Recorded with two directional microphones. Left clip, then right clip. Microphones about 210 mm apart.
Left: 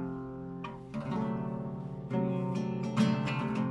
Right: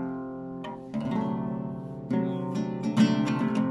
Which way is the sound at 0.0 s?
40° right (ahead or behind).